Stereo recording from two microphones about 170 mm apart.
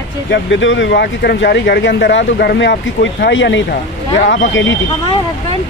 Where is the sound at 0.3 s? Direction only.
90° left.